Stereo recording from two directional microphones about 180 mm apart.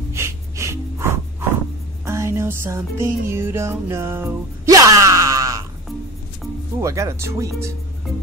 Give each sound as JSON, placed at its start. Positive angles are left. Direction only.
{"t": 0.1, "sound": "music", "side_deg": -15}
{"t": 6.8, "sound": "music", "side_deg": -15}